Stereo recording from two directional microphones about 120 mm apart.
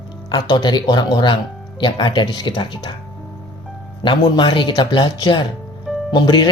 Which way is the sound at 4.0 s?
40° left (ahead or behind).